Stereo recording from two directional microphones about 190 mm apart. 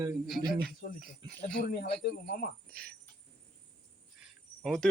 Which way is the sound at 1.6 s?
60° left (ahead or behind).